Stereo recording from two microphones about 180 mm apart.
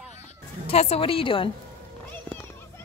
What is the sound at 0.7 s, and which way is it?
Speech, 35° left (ahead or behind).